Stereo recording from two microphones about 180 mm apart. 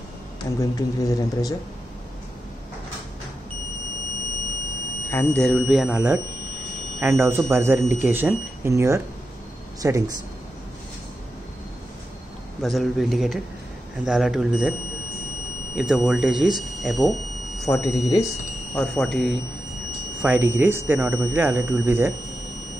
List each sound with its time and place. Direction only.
0.6 s speech: 20° left (ahead or behind)
5.1 s speech: 10° left (ahead or behind); by 10.1 s 20° right (ahead or behind)
12.6 s speech: centre (ahead or behind)
17.6 s speech: 15° left (ahead or behind)
18.8 s speech: centre (ahead or behind)